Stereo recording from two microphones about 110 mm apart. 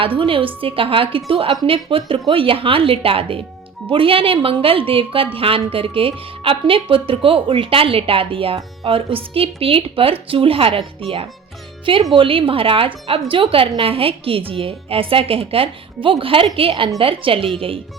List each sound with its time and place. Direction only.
0.0 s a woman's voice: 55° right (ahead or behind)